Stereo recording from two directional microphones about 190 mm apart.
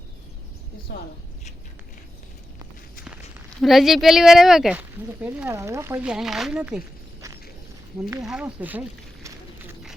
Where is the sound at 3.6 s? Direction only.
Centre (ahead or behind).